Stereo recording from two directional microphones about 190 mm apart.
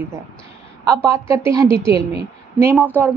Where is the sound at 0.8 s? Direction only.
15° right (ahead or behind).